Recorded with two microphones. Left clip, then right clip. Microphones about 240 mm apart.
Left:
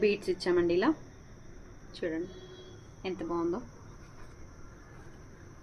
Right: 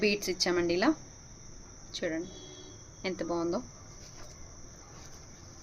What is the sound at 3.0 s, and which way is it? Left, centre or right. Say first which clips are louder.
Speech: right 2 dB; right.